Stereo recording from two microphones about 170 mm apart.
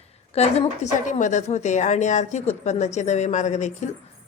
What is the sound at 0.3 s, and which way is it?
A woman's voice, 40° left (ahead or behind).